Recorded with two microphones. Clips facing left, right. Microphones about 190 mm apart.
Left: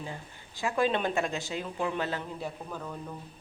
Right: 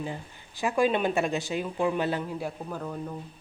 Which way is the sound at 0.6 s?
15° right (ahead or behind).